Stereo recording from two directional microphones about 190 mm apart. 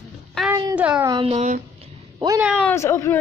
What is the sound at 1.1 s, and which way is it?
Speech, 30° right (ahead or behind).